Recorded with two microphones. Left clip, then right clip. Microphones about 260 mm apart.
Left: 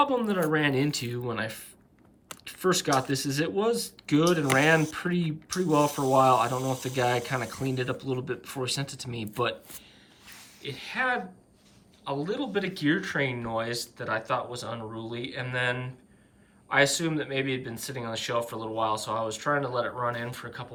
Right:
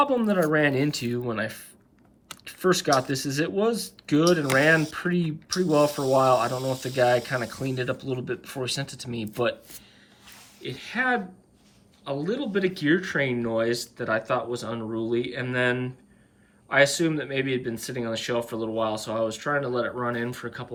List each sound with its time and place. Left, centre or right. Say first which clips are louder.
0.0 s speech: right 3 dB; centre